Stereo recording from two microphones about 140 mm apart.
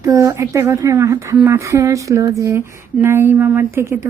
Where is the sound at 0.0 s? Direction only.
20° right (ahead or behind).